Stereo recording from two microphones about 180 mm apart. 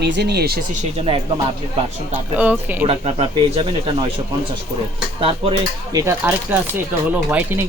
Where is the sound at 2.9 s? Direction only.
30° right (ahead or behind).